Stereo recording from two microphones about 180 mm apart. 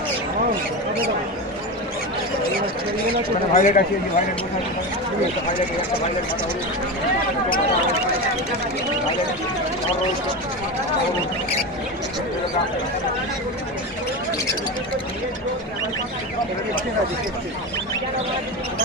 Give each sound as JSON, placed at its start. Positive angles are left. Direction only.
{"t": 3.5, "sound": "speech", "side_deg": 45}